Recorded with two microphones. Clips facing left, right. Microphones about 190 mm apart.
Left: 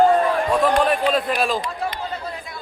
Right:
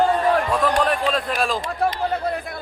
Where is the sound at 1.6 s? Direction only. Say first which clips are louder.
Right 5 dB; 60° right (ahead or behind).